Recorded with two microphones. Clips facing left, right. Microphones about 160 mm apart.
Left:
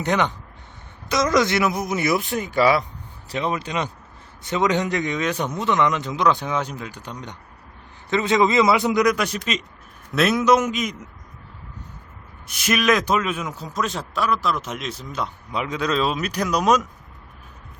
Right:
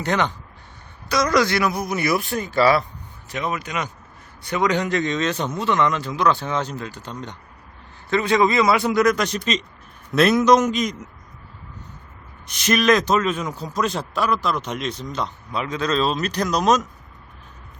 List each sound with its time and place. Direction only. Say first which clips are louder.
0.0 s a man's voice: left 1 dB; 20° left (ahead or behind)
3.2 s a man's voice: left 2 dB; 30° left (ahead or behind); by 10.9 s 5° left (ahead or behind)
12.5 s a man's voice: right 2 dB; 5° left (ahead or behind)